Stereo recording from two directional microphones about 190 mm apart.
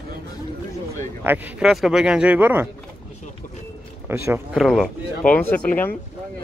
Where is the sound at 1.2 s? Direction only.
5° right (ahead or behind).